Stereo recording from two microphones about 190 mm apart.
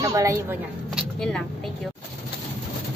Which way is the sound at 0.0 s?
15° right (ahead or behind).